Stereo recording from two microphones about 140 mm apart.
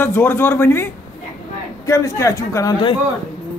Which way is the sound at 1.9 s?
25° left (ahead or behind).